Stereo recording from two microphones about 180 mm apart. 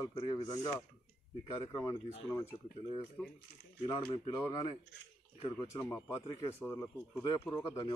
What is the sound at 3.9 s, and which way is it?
Speech, 20° left (ahead or behind).